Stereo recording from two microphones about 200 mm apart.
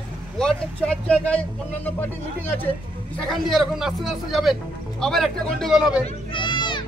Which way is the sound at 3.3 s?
Centre (ahead or behind).